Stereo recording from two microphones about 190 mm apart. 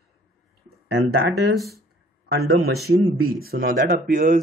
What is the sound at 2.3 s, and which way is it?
Speech, 55° right (ahead or behind).